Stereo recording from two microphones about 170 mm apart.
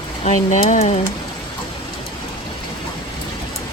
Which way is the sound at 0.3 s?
45° left (ahead or behind).